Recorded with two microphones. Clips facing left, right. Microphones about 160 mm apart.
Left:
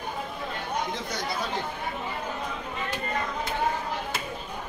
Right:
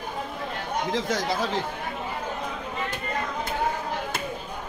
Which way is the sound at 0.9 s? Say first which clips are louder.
Right 7 dB; 90° right.